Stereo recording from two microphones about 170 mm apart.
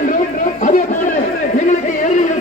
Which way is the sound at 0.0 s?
50° left (ahead or behind).